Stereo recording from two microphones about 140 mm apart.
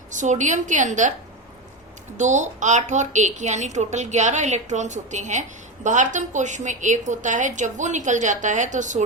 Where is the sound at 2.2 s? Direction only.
60° right (ahead or behind).